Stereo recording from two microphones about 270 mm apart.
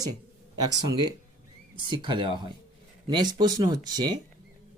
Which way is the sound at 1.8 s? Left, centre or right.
Centre.